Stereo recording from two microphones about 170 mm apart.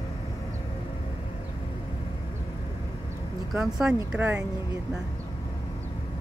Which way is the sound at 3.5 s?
5° right (ahead or behind).